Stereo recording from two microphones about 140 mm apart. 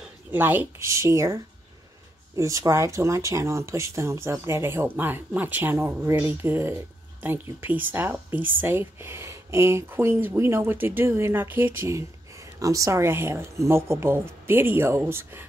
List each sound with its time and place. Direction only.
0.3 s speech: 15° right (ahead or behind)